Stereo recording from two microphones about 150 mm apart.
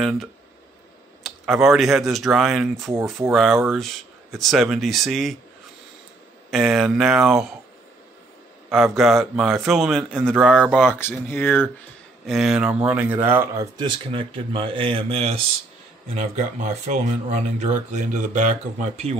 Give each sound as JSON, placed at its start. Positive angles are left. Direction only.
{"t": 0.0, "sound": "speech", "side_deg": 0}
{"t": 2.9, "sound": "speech", "side_deg": -15}
{"t": 3.3, "sound": "speech", "side_deg": 0}
{"t": 6.5, "sound": "speech", "side_deg": 0}
{"t": 8.6, "sound": "speech", "side_deg": 0}
{"t": 11.0, "sound": "speech", "side_deg": 15}
{"t": 12.3, "sound": "speech", "side_deg": -5}